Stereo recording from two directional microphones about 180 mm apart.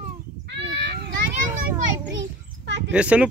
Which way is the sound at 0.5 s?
75° right (ahead or behind).